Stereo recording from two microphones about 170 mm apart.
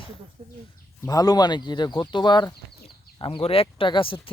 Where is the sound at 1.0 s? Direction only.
20° left (ahead or behind).